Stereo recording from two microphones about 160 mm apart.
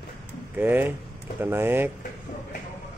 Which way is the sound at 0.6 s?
10° right (ahead or behind).